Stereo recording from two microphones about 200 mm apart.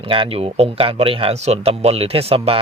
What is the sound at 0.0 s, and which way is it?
Speech, 25° right (ahead or behind).